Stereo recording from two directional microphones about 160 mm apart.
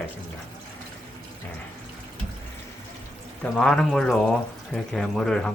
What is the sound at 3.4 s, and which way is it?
Speech, 5° left (ahead or behind).